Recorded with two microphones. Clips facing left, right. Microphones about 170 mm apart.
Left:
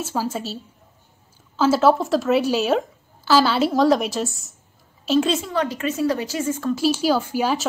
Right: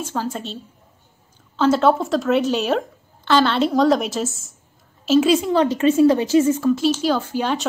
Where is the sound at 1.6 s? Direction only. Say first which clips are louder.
Even; 5° left (ahead or behind).